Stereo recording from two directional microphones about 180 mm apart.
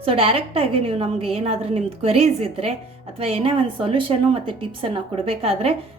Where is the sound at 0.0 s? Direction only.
30° right (ahead or behind).